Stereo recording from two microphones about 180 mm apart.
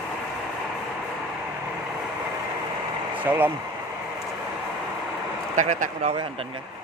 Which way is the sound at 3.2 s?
10° right (ahead or behind).